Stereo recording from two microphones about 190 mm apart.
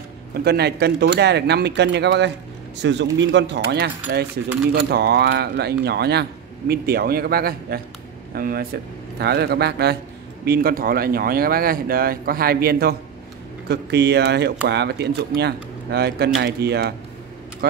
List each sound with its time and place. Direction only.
0.3 s speech: 60° right (ahead or behind)